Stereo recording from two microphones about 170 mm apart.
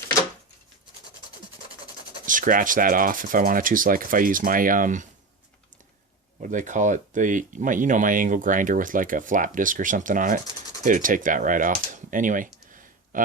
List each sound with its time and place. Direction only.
2.2 s speech: 50° right (ahead or behind)
6.4 s speech: 50° right (ahead or behind)